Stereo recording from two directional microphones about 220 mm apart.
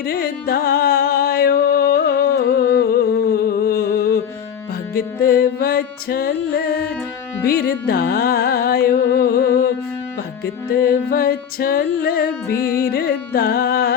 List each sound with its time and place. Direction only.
0.0 s music: 45° left (ahead or behind)
12.5 s music: 10° left (ahead or behind)
12.9 s music: 45° left (ahead or behind)